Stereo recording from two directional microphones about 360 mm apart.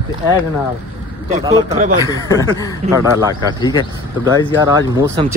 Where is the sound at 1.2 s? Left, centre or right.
Centre.